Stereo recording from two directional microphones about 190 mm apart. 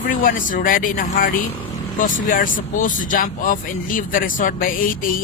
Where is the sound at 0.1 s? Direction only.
45° left (ahead or behind).